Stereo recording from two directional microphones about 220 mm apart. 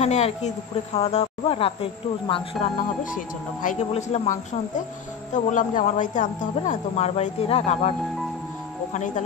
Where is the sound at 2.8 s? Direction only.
35° left (ahead or behind).